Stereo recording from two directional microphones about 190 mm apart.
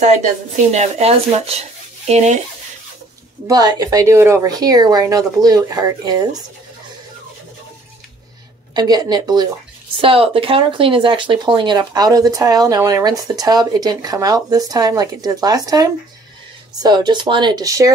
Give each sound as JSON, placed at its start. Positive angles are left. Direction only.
{"t": 0.7, "sound": "speech", "side_deg": -35}
{"t": 3.4, "sound": "speech", "side_deg": -20}
{"t": 8.7, "sound": "speech", "side_deg": -20}